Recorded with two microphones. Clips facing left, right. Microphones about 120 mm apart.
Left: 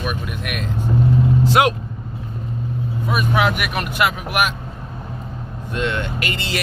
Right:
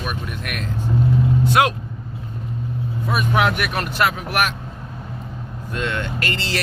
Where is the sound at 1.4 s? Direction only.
25° left (ahead or behind).